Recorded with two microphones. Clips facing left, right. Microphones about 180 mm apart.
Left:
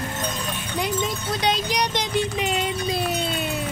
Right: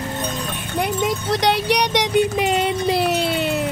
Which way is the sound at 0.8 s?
70° right (ahead or behind).